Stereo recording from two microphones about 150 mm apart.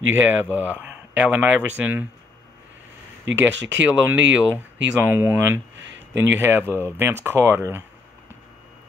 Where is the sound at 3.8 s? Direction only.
10° right (ahead or behind).